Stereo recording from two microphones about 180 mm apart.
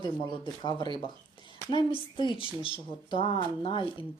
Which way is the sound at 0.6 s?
25° left (ahead or behind).